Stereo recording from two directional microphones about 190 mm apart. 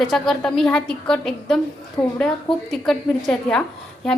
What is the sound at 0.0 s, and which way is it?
A woman's voice, centre (ahead or behind).